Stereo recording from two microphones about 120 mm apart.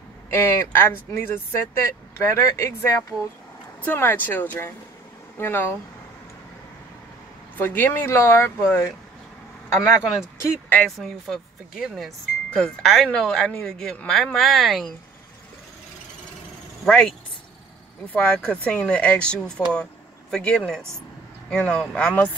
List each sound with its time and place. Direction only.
0.3 s speech: 20° left (ahead or behind)
7.5 s speech: 15° left (ahead or behind)
10.4 s speech: 15° left (ahead or behind)
11.0 s speech: centre (ahead or behind)
16.8 s speech: 5° left (ahead or behind)
18.1 s speech: 10° left (ahead or behind)